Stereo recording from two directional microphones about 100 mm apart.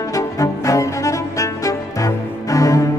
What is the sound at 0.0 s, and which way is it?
Music, 35° left (ahead or behind).